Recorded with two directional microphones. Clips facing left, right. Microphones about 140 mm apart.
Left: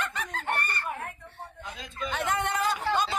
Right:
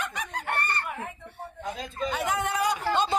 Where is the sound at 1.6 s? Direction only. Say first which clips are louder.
Right 6 dB; 40° right (ahead or behind).